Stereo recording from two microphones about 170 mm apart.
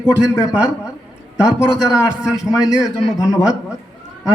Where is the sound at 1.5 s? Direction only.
5° right (ahead or behind).